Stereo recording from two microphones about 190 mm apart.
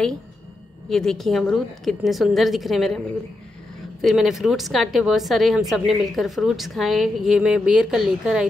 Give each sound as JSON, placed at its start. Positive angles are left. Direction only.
{"t": 0.8, "sound": "a woman's voice", "side_deg": 0}
{"t": 4.0, "sound": "a woman's voice", "side_deg": 0}